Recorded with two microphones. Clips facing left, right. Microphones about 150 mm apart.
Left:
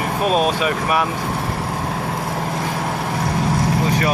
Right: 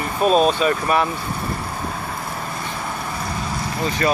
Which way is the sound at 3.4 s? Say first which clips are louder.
Left 7 dB; 80° left.